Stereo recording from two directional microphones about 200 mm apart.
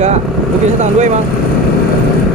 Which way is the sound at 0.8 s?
35° right (ahead or behind).